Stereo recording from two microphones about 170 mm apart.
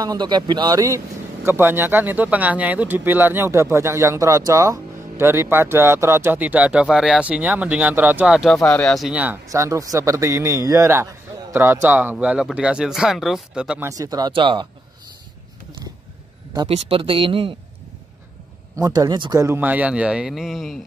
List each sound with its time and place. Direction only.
0.0 s speech: 25° right (ahead or behind); by 13.8 s 5° right (ahead or behind)
13.8 s speech: 20° right (ahead or behind)
16.5 s speech: 35° right (ahead or behind)
18.8 s speech: 25° right (ahead or behind)
19.4 s speech: 10° right (ahead or behind)